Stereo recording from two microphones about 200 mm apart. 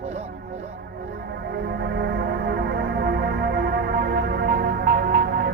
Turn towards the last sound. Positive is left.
turn(degrees=-50)  # may be behind; listen again after turning